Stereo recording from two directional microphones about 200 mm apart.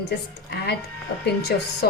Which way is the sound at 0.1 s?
55° left (ahead or behind).